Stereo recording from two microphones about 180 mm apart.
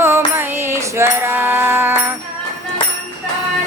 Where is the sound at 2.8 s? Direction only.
30° left (ahead or behind).